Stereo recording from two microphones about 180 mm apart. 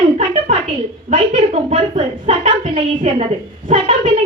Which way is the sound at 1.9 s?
40° right (ahead or behind).